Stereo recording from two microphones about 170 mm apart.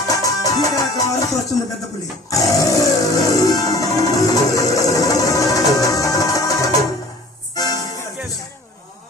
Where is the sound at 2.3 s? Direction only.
20° left (ahead or behind).